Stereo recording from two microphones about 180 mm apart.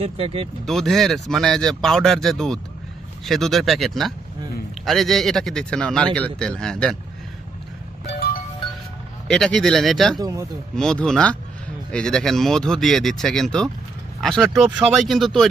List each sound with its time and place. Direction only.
0.0 s speech: 30° right (ahead or behind)
0.6 s speech: centre (ahead or behind)
8.0 s music: 65° left (ahead or behind)
9.2 s speech: 5° left (ahead or behind)
10.2 s speech: 20° right (ahead or behind)
10.8 s speech: 5° left (ahead or behind)